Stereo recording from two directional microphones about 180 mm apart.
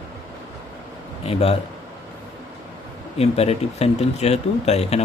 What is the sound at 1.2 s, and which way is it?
Speech, 35° left (ahead or behind).